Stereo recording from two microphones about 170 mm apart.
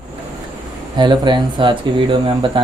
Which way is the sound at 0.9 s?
25° right (ahead or behind).